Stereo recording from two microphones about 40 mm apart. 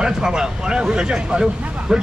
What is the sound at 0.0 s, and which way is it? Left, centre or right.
Speech, centre.